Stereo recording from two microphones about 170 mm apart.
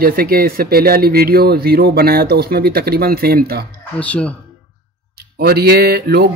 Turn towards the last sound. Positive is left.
turn(degrees=-70)  # may be behind; listen again after turning